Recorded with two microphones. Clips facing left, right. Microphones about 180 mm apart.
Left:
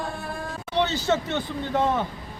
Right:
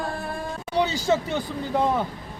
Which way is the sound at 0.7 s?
10° right (ahead or behind).